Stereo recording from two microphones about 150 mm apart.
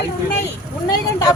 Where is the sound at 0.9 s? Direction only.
25° left (ahead or behind).